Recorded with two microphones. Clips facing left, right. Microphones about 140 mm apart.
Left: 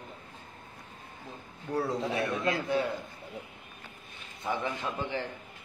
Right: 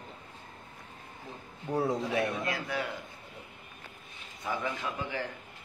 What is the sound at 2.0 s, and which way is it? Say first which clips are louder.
Speech: left 1 dB; 25° left (ahead or behind).